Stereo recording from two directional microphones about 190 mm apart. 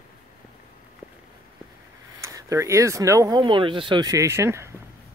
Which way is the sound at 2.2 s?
15° right (ahead or behind).